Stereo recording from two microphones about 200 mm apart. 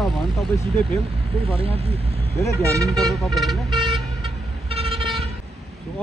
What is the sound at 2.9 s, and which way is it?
Speech, centre (ahead or behind).